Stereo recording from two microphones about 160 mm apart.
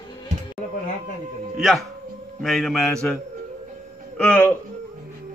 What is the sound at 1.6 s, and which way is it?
Speech, centre (ahead or behind).